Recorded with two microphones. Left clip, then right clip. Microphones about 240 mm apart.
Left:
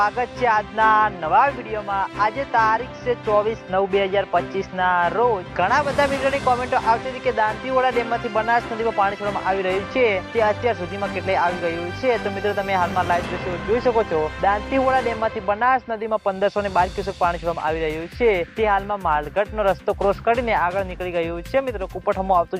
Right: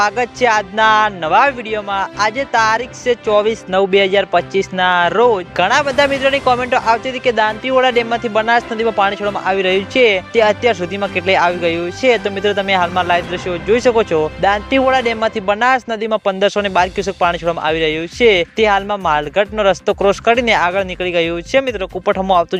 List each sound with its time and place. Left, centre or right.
0.0 s speech: right